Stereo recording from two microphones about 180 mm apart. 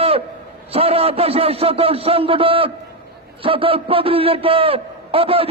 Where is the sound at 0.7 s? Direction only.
35° right (ahead or behind).